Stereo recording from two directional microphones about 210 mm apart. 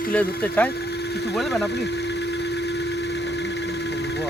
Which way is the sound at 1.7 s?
55° left (ahead or behind).